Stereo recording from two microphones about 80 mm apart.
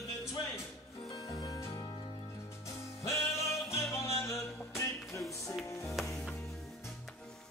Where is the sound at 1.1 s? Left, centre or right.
Left.